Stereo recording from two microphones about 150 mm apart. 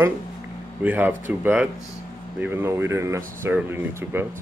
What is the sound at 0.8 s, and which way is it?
Speech, 10° right (ahead or behind).